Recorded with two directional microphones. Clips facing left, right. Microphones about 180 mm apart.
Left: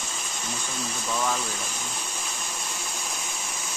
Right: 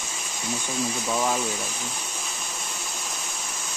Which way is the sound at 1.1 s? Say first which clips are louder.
Right 2 dB; 20° right (ahead or behind).